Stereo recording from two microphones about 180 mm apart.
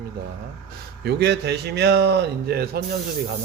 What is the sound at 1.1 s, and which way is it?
Speech, 65° right (ahead or behind).